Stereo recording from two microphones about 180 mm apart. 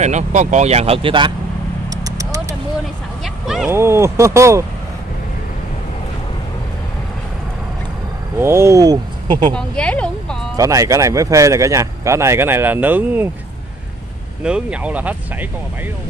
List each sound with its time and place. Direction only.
0.0 s speech: 40° right (ahead or behind)
2.0 s vehicle: 20° right (ahead or behind)
3.4 s speech: 5° right (ahead or behind)
3.7 s speech: 15° right (ahead or behind)
8.4 s speech: 15° right (ahead or behind)
9.5 s speech: 5° left (ahead or behind)
10.5 s speech: 20° right (ahead or behind)
14.4 s speech: 5° right (ahead or behind)